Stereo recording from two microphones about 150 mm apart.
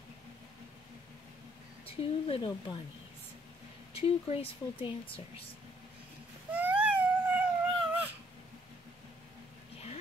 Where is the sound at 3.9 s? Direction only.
40° left (ahead or behind).